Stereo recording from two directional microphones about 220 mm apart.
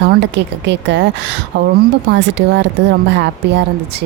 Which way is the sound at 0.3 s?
55° right (ahead or behind).